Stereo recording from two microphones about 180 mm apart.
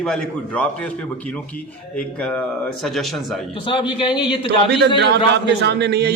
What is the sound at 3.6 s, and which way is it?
Speech, 25° left (ahead or behind).